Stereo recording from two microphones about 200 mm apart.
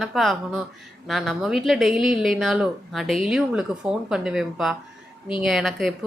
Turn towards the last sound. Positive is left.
turn(degrees=0)  # may be behind; listen again after turning